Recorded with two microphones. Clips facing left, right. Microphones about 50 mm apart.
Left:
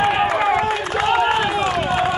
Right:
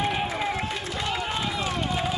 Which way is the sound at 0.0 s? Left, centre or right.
Left.